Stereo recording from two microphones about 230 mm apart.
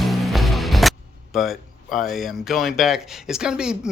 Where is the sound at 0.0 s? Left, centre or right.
Centre.